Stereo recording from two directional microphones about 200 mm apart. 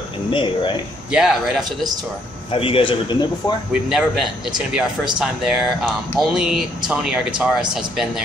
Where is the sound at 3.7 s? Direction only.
5° right (ahead or behind).